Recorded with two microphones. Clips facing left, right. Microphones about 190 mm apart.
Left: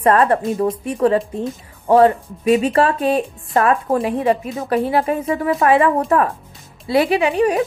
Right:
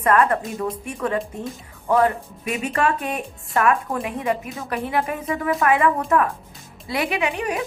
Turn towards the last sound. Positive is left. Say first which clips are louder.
# left 8 dB
turn(degrees=35)  # may be behind; listen again after turning